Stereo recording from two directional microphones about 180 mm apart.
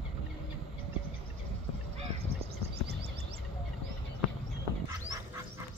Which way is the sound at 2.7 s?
65° right (ahead or behind).